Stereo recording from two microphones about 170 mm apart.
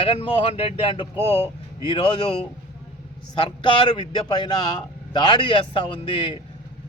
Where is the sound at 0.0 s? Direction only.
35° left (ahead or behind).